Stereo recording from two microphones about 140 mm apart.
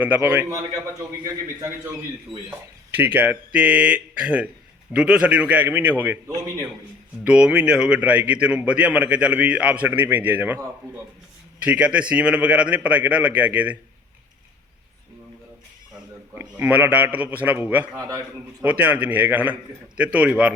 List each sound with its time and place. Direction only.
0.0 s a man's voice: 10° right (ahead or behind)
0.5 s a man's voice: 25° right (ahead or behind)
2.9 s a man's voice: 15° right (ahead or behind)
16.3 s a man's voice: 15° right (ahead or behind)
17.9 s a man's voice: 25° right (ahead or behind)
18.6 s a man's voice: 10° right (ahead or behind)